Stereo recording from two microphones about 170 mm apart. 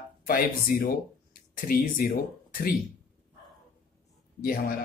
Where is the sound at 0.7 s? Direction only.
55° left (ahead or behind).